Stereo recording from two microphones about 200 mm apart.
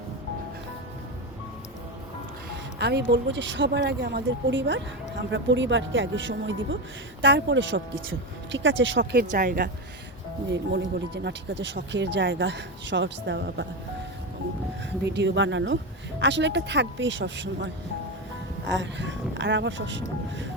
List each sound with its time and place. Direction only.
2.7 s speech: 55° right (ahead or behind)
9.3 s speech: 40° right (ahead or behind)
10.5 s speech: 60° right (ahead or behind)
14.8 s speech: 60° right (ahead or behind)
18.7 s speech: 65° right (ahead or behind)